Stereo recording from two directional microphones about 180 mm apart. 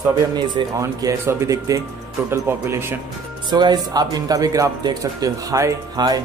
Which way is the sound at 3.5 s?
25° right (ahead or behind).